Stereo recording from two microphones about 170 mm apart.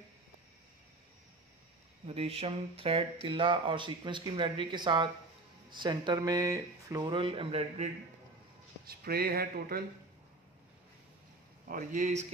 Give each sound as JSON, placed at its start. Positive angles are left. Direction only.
{"t": 2.0, "sound": "speech", "side_deg": -35}
{"t": 8.8, "sound": "speech", "side_deg": -65}
{"t": 11.6, "sound": "speech", "side_deg": -50}